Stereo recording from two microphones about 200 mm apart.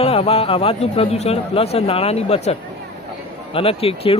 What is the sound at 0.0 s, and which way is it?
Speech, 30° left (ahead or behind).